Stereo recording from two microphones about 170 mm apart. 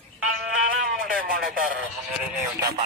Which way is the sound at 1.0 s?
55° right (ahead or behind).